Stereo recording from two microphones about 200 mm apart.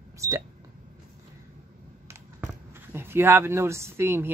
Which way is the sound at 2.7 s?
10° right (ahead or behind).